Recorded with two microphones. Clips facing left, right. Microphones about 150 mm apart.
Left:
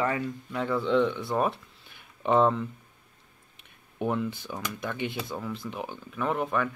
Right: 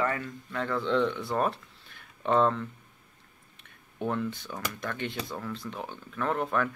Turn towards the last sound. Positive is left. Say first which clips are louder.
# left 1 dB
turn(degrees=5)  # may be behind; listen again after turning